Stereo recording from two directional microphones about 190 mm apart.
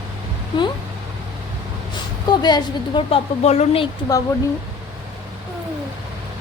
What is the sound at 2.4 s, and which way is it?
Speech, 20° left (ahead or behind).